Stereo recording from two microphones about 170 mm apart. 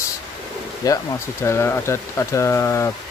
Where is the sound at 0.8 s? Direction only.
20° left (ahead or behind).